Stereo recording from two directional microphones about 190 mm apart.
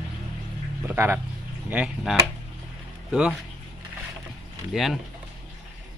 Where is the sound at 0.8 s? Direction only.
10° right (ahead or behind).